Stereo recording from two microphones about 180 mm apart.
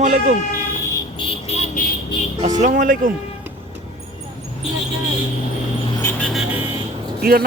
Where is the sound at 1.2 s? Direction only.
35° left (ahead or behind).